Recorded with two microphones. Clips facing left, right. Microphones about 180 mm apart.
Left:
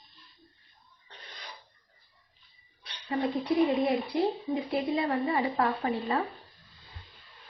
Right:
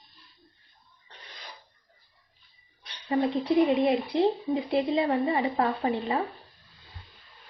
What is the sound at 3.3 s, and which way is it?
Speech, 20° right (ahead or behind).